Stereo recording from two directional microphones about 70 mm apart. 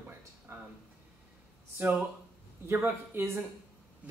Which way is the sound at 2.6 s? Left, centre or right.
Right.